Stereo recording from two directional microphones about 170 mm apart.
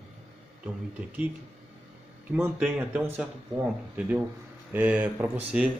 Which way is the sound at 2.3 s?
5° right (ahead or behind).